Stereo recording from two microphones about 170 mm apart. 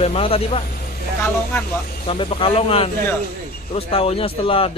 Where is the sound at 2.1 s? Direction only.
30° left (ahead or behind).